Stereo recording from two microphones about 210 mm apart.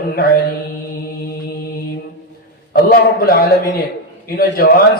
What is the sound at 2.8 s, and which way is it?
Speech, 45° left (ahead or behind).